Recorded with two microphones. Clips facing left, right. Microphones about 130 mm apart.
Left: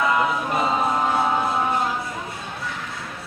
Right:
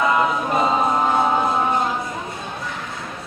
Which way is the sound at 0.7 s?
25° right (ahead or behind).